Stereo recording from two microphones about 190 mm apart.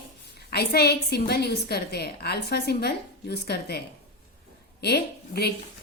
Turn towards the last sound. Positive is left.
turn(degrees=55)  # may be behind; listen again after turning